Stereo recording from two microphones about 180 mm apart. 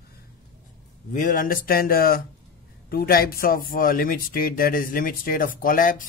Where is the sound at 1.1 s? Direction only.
50° left (ahead or behind).